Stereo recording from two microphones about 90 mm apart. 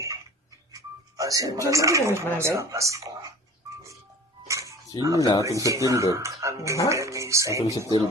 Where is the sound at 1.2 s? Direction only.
40° right (ahead or behind).